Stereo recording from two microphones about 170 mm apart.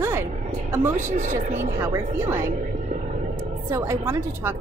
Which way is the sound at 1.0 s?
50° right (ahead or behind).